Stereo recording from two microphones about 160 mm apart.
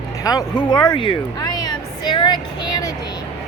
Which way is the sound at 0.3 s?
25° left (ahead or behind).